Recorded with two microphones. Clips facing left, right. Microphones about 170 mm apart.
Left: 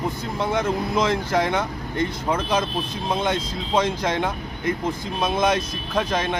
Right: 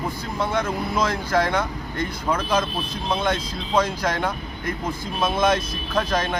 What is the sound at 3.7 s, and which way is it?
Speech, 20° left (ahead or behind).